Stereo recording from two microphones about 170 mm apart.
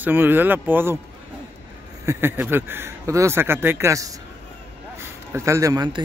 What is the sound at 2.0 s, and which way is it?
Speech, 15° right (ahead or behind).